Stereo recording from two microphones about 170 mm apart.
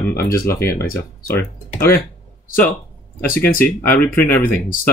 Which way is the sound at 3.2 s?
55° left (ahead or behind).